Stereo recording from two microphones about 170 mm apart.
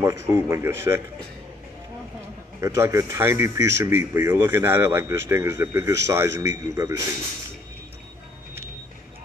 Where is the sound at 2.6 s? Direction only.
15° right (ahead or behind).